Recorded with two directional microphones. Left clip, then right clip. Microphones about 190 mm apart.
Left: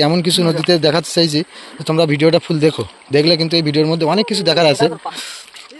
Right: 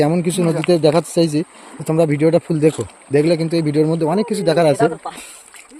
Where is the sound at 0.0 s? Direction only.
5° right (ahead or behind).